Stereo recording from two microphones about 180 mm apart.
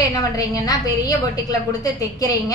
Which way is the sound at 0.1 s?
20° left (ahead or behind).